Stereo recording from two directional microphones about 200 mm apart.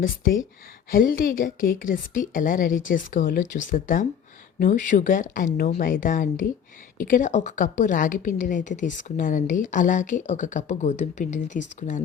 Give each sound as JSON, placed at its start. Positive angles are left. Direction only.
{"t": 0.9, "sound": "a woman's voice", "side_deg": 45}